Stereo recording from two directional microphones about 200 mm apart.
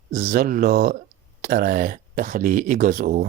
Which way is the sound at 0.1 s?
45° right (ahead or behind).